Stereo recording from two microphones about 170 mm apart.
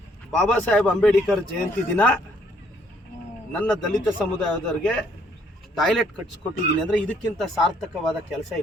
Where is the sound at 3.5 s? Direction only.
5° left (ahead or behind).